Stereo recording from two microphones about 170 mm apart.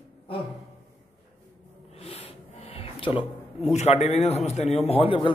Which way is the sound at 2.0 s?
35° left (ahead or behind).